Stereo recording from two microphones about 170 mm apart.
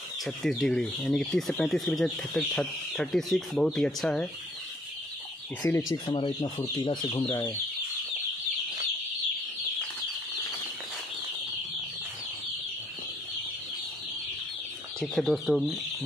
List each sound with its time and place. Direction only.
0.2 s speech: centre (ahead or behind)
5.6 s speech: 20° left (ahead or behind)
15.0 s speech: 5° left (ahead or behind)